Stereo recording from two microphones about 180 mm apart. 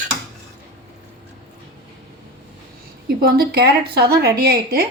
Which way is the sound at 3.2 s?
60° right (ahead or behind).